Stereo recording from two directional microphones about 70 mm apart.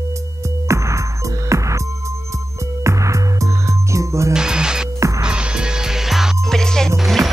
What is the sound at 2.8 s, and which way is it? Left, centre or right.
Music, right.